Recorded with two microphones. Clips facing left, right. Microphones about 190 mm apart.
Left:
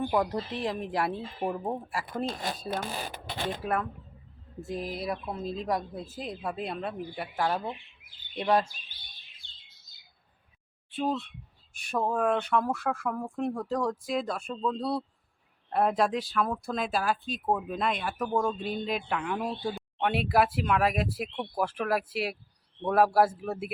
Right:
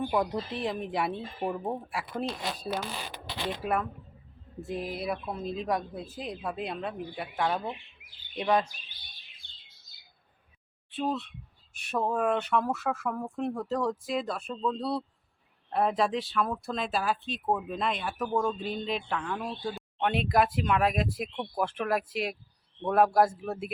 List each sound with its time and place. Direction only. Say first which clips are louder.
0.1 s speech: left 1 dB; centre (ahead or behind)
2.0 s speech: left 1 dB; 50° left (ahead or behind)
3.6 s speech: right 1 dB; 5° right (ahead or behind)
10.9 s a man's voice: left 1 dB; centre (ahead or behind)